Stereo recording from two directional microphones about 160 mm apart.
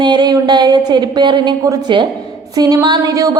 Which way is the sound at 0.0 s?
30° right (ahead or behind).